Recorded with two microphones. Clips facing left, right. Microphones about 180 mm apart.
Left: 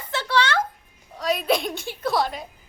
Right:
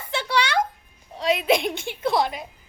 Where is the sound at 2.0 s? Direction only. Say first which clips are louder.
Right 1 dB; 20° right (ahead or behind).